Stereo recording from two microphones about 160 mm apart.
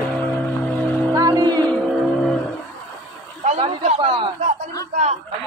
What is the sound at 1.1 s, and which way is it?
Music, 25° right (ahead or behind).